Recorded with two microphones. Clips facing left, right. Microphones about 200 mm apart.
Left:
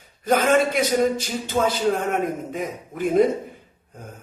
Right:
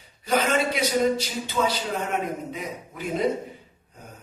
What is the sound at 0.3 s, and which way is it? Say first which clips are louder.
A man's voice: left 5 dB; 50° left (ahead or behind).